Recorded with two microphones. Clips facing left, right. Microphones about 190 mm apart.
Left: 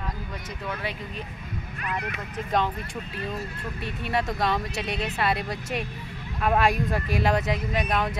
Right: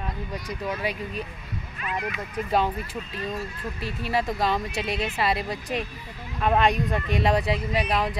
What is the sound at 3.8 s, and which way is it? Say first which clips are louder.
Speech: right 1 dB; centre (ahead or behind).